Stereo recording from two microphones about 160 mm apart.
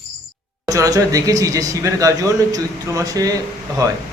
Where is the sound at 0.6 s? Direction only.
20° right (ahead or behind).